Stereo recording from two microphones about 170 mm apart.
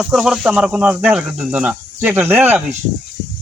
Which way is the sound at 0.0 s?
5° right (ahead or behind).